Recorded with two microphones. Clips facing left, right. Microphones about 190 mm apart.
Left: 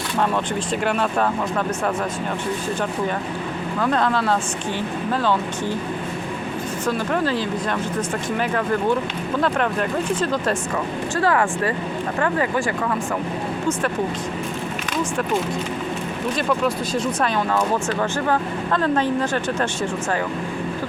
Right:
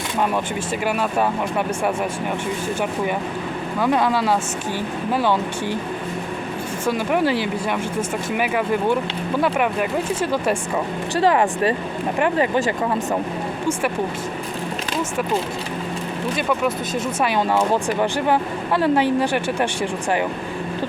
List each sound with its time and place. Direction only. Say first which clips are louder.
0.9 s speech: right 1 dB; 10° right (ahead or behind)
3.8 s speech: right 2 dB; 10° right (ahead or behind)
6.8 s speech: right 3 dB; 15° right (ahead or behind)
10.2 s speech: right 1 dB; 10° right (ahead or behind)
17.2 s speech: right 5 dB; 10° right (ahead or behind)